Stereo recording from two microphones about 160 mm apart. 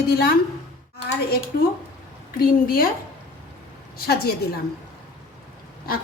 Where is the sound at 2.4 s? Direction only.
65° left (ahead or behind).